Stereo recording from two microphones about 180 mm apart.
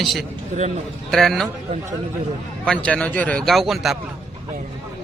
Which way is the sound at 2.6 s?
5° left (ahead or behind).